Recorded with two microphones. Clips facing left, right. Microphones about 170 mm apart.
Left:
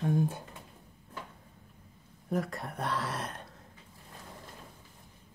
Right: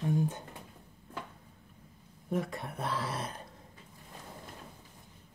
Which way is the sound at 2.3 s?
Centre (ahead or behind).